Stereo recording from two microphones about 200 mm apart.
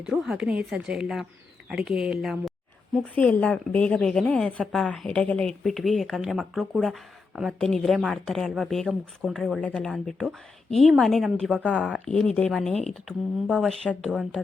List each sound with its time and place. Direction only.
0.0 s speech: 5° right (ahead or behind)